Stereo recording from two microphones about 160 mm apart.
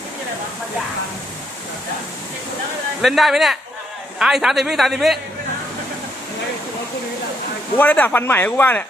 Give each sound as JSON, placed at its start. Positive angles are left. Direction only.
{"t": 3.0, "sound": "a man's voice", "side_deg": 0}
{"t": 7.8, "sound": "speech", "side_deg": 10}